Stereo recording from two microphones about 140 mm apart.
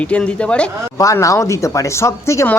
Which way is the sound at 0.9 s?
25° left (ahead or behind).